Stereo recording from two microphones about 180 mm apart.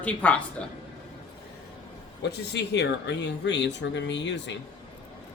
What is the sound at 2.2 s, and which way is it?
Speech, 70° left (ahead or behind).